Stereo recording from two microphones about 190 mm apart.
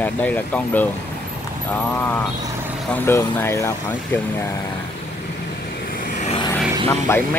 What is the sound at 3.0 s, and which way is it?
Speech, 15° left (ahead or behind).